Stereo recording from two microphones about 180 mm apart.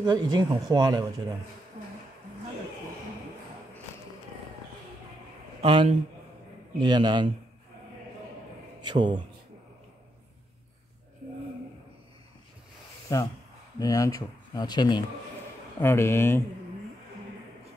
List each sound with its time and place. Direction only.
0.0 s speech: 25° right (ahead or behind)
5.6 s a man's voice: 30° right (ahead or behind)
8.8 s speech: 25° right (ahead or behind)
13.1 s speech: 20° left (ahead or behind)
15.8 s speech: 15° left (ahead or behind)